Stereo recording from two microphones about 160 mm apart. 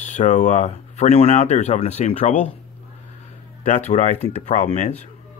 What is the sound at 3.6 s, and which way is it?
Speech, 45° left (ahead or behind).